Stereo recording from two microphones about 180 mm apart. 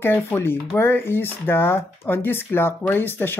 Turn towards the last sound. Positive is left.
turn(degrees=10)  # may be behind; listen again after turning